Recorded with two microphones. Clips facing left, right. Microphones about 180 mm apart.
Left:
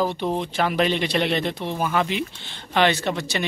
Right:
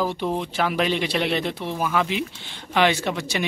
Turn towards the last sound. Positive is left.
turn(degrees=-10)  # may be behind; listen again after turning